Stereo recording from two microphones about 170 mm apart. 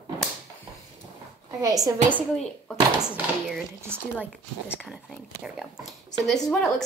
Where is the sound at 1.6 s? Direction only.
20° right (ahead or behind).